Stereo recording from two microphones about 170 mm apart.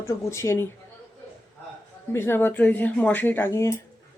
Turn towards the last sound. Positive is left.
turn(degrees=15)  # may be behind; listen again after turning